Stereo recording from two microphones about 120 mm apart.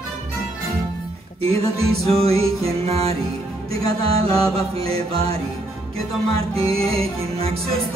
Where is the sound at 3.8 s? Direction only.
50° right (ahead or behind).